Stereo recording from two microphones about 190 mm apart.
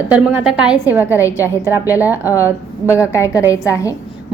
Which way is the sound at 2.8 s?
15° left (ahead or behind).